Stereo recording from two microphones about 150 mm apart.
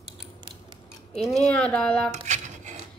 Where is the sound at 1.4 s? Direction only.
10° left (ahead or behind).